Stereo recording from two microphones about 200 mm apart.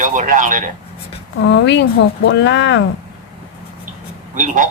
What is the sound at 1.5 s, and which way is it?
Speech, 60° left (ahead or behind).